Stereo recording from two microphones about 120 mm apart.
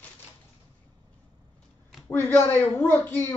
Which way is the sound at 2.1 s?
15° left (ahead or behind).